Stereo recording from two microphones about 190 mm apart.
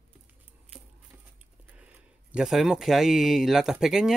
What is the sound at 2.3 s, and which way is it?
Speech, centre (ahead or behind).